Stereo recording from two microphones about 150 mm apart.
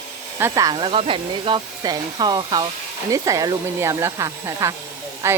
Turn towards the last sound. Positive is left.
turn(degrees=-20)  # may be behind; listen again after turning